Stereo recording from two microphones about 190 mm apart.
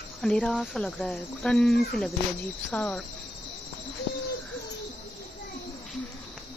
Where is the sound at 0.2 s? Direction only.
5° left (ahead or behind).